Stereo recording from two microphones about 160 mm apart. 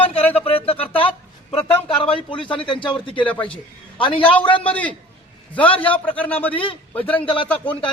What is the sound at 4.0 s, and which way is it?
Speech, 35° left (ahead or behind).